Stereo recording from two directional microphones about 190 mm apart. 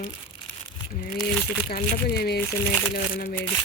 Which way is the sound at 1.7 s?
55° left (ahead or behind).